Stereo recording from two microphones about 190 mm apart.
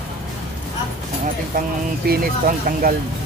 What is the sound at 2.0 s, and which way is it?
Speech, 50° right (ahead or behind).